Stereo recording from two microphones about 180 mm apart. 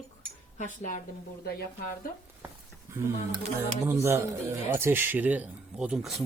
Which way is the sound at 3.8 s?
15° right (ahead or behind).